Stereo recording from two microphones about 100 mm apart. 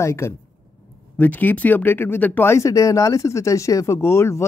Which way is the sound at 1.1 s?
15° left (ahead or behind).